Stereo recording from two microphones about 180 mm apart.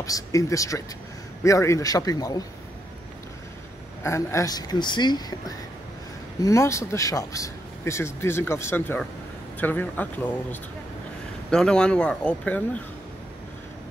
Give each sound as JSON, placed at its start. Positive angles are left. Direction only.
{"t": 0.0, "sound": "speech", "side_deg": 20}
{"t": 4.0, "sound": "speech", "side_deg": 15}